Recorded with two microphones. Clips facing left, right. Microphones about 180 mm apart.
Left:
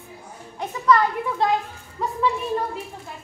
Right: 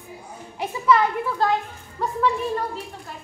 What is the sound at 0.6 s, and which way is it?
A child's voice, 5° right (ahead or behind).